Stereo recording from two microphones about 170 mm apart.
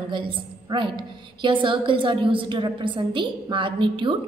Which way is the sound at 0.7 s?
30° right (ahead or behind).